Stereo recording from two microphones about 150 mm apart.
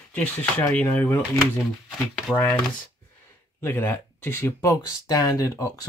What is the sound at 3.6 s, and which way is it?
Speech, 15° left (ahead or behind).